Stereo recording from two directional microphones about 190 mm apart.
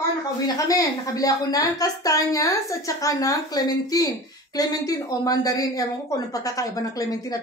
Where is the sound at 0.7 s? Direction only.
20° left (ahead or behind).